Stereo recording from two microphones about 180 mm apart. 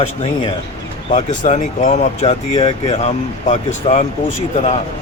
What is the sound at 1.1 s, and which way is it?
Speech, 40° left (ahead or behind).